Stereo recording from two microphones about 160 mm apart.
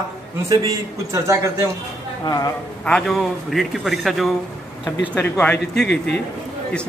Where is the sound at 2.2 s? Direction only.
25° left (ahead or behind).